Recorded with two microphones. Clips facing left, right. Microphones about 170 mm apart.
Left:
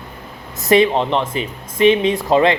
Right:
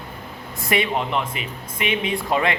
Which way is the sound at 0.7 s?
30° left (ahead or behind).